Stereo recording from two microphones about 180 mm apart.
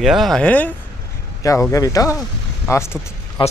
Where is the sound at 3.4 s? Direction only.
30° left (ahead or behind).